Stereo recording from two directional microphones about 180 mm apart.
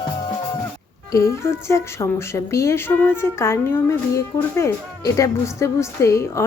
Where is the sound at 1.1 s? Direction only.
15° left (ahead or behind).